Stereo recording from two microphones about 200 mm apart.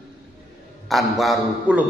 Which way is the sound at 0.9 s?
Centre (ahead or behind).